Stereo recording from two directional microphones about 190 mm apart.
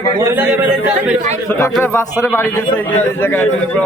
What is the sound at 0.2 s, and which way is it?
Speech, 15° right (ahead or behind).